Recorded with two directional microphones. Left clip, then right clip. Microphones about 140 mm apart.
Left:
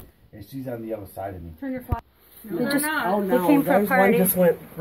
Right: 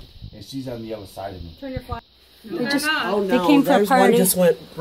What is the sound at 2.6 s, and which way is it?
Speech, centre (ahead or behind).